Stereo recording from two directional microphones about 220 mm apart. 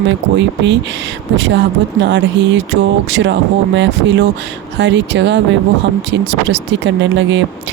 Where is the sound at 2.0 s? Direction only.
55° right (ahead or behind).